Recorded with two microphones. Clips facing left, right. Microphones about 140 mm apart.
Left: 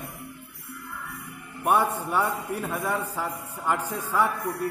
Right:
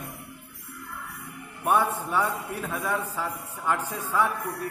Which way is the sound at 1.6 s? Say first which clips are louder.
Left 1 dB; 15° left (ahead or behind).